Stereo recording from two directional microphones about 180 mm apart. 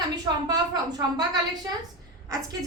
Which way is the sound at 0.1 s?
20° right (ahead or behind).